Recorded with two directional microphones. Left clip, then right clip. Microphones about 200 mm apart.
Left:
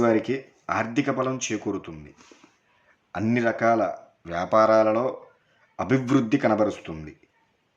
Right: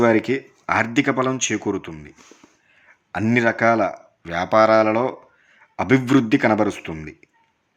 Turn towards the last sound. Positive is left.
turn(degrees=-25)  # may be behind; listen again after turning